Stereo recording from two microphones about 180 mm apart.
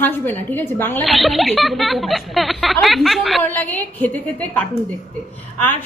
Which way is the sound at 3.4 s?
10° left (ahead or behind).